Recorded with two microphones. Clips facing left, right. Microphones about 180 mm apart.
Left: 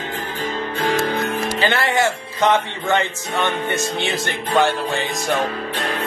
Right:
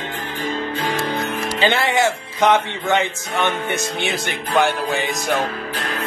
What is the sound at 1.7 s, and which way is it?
Speech, 20° right (ahead or behind).